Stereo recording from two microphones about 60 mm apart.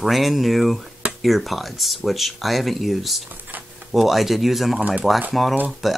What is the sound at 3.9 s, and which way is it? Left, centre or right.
Speech, centre.